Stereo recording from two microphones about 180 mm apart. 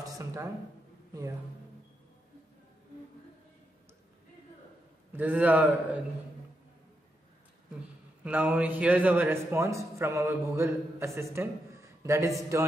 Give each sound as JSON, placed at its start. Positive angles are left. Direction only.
{"t": 0.0, "sound": "a sound", "side_deg": -20}
{"t": 5.1, "sound": "a man's voice", "side_deg": -10}
{"t": 8.2, "sound": "a man's voice", "side_deg": -10}